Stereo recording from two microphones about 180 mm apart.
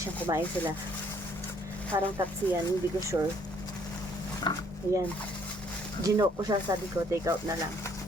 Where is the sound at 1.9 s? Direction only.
10° right (ahead or behind).